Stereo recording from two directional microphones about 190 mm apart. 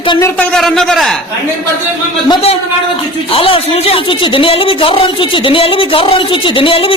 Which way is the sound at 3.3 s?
30° left (ahead or behind).